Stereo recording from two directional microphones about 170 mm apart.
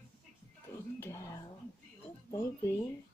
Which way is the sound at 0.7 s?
15° left (ahead or behind).